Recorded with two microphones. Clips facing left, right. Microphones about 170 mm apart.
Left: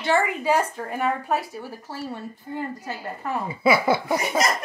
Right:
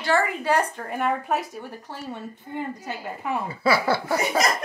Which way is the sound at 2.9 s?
5° right (ahead or behind).